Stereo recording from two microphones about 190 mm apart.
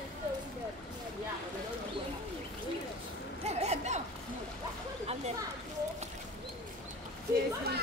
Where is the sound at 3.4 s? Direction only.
35° right (ahead or behind).